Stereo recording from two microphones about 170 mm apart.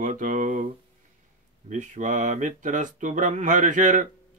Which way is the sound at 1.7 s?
45° right (ahead or behind).